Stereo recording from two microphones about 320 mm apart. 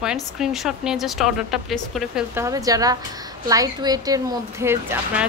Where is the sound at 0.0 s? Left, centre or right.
Centre.